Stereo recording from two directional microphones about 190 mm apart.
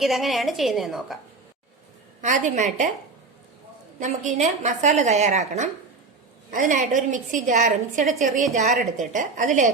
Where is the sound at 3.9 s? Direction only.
40° right (ahead or behind).